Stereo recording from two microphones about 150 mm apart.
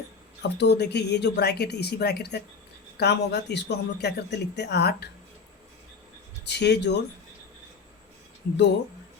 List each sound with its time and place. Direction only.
0.4 s speech: 90° left
6.4 s speech: 90° left